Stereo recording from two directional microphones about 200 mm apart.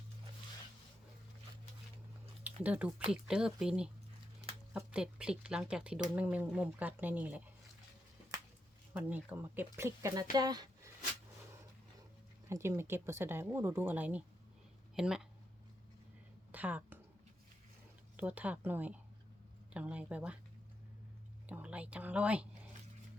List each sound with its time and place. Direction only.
2.4 s speech: 5° right (ahead or behind)
8.9 s speech: 5° right (ahead or behind)
12.5 s speech: 10° right (ahead or behind)
16.5 s a sound: 10° right (ahead or behind)
18.2 s speech: 10° right (ahead or behind)
21.4 s speech: 5° right (ahead or behind)